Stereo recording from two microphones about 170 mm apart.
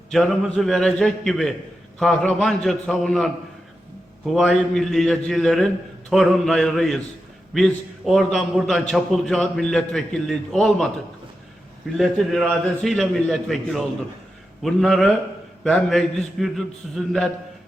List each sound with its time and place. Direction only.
0.1 s a man's voice: centre (ahead or behind)
4.4 s a man's voice: centre (ahead or behind)
11.9 s a man's voice: centre (ahead or behind)